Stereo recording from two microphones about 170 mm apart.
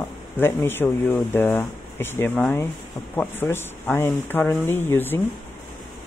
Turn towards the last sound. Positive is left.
turn(degrees=10)  # may be behind; listen again after turning